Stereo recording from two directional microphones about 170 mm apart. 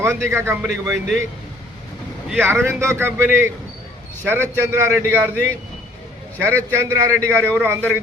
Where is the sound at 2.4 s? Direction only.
15° right (ahead or behind).